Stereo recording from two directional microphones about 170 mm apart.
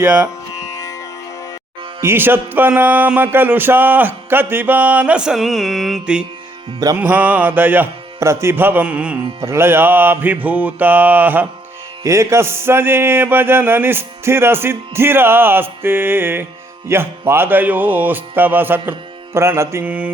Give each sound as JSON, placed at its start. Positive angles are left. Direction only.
{"t": 0.0, "sound": "speech", "side_deg": -20}
{"t": 0.7, "sound": "music", "side_deg": 15}
{"t": 2.0, "sound": "music", "side_deg": -15}
{"t": 6.7, "sound": "speech", "side_deg": -20}
{"t": 7.0, "sound": "music", "side_deg": -10}